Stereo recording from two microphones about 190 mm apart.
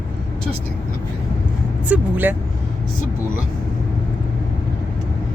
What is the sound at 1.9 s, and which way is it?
Speech, 10° right (ahead or behind).